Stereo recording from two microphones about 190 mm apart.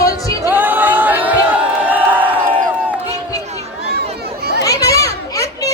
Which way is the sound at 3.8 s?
60° right (ahead or behind).